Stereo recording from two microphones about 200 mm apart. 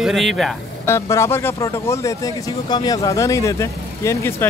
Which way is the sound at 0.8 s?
15° left (ahead or behind).